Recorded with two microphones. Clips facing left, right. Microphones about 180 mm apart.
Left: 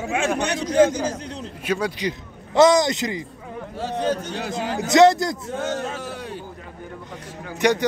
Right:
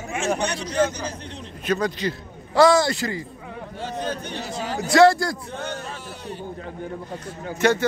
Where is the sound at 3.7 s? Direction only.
40° left (ahead or behind).